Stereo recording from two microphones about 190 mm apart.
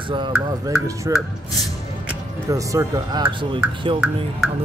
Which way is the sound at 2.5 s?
15° right (ahead or behind).